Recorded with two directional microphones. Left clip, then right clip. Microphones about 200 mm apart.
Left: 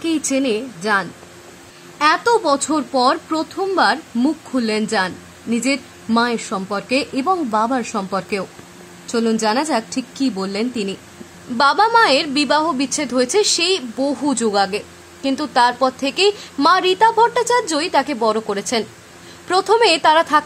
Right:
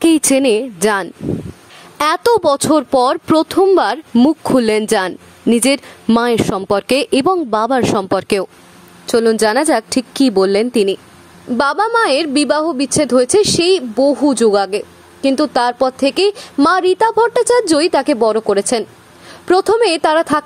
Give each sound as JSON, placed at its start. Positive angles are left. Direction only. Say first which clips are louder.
{"t": 0.0, "sound": "a woman's voice", "louder": "right 8 dB", "side_deg": -60}
{"t": 9.0, "sound": "a woman's voice", "louder": "right 6 dB", "side_deg": -40}
{"t": 11.5, "sound": "a woman's voice", "louder": "even", "side_deg": -30}